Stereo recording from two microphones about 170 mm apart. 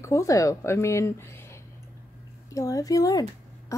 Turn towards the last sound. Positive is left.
turn(degrees=20)  # may be behind; listen again after turning